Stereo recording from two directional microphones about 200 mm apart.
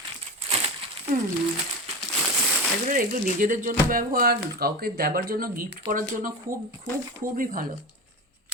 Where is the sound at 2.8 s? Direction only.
40° right (ahead or behind).